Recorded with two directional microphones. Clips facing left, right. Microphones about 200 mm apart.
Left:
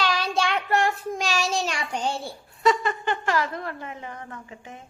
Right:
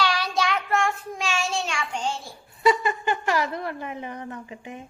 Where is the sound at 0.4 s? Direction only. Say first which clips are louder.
Left 1 dB; 35° left (ahead or behind).